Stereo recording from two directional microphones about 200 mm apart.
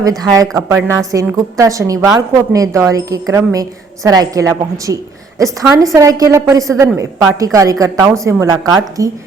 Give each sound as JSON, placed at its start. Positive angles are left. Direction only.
{"t": 0.0, "sound": "a woman's voice", "side_deg": -15}